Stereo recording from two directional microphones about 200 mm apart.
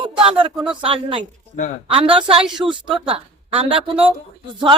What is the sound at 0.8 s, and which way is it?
A woman's voice, 25° right (ahead or behind).